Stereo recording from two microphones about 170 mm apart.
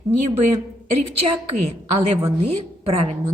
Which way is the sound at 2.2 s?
40° right (ahead or behind).